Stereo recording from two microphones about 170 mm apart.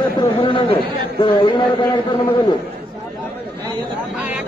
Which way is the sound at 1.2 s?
30° left (ahead or behind).